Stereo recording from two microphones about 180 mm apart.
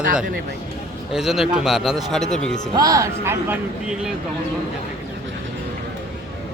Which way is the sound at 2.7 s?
20° right (ahead or behind).